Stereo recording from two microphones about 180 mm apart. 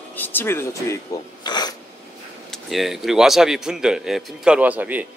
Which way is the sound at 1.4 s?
25° left (ahead or behind).